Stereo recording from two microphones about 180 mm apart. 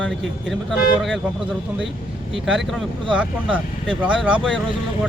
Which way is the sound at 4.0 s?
5° right (ahead or behind).